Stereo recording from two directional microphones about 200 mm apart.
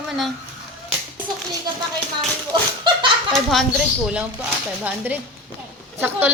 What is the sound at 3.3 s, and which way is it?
A woman's voice, centre (ahead or behind).